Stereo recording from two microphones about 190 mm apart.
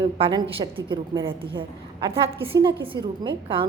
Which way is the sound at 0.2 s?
25° right (ahead or behind).